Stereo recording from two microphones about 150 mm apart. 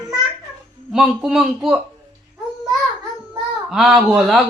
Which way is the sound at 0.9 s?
5° right (ahead or behind).